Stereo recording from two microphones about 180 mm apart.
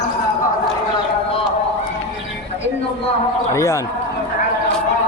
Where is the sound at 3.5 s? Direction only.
15° left (ahead or behind).